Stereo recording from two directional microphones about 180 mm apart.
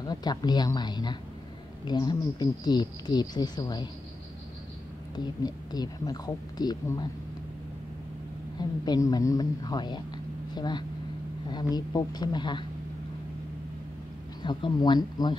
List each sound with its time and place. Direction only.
0.0 s a woman's voice: 20° left (ahead or behind)
5.1 s a woman's voice: 25° left (ahead or behind)
8.5 s a woman's voice: 20° left (ahead or behind)
14.4 s a woman's voice: 25° left (ahead or behind)